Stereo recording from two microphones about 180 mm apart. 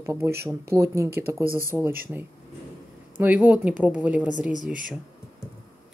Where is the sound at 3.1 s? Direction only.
10° right (ahead or behind).